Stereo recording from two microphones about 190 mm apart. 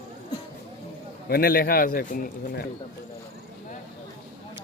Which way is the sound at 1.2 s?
50° left (ahead or behind).